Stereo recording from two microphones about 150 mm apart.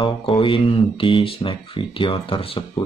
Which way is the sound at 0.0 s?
35° left (ahead or behind).